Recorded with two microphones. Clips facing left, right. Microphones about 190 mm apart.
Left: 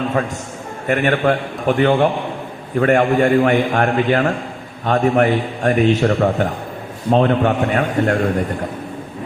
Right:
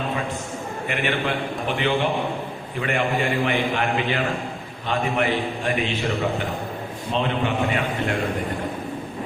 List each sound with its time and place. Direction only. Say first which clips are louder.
0.9 s a man's voice: left 9 dB; 45° left (ahead or behind)